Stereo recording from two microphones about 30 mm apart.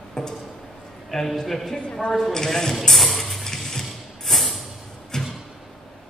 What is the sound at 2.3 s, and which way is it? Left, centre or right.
Speech, centre.